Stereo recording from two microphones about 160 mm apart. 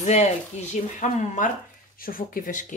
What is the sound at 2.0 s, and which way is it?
Speech, 60° left (ahead or behind).